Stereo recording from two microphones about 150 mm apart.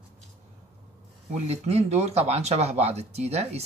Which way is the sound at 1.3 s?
45° right (ahead or behind).